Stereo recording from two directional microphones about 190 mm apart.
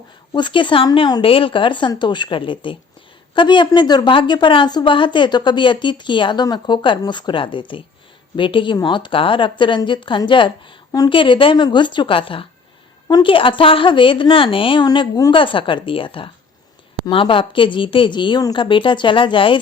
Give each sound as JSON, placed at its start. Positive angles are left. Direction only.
{"t": 0.3, "sound": "a woman's voice", "side_deg": 25}